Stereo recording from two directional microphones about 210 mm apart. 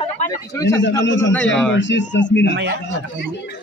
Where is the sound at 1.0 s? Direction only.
60° left (ahead or behind).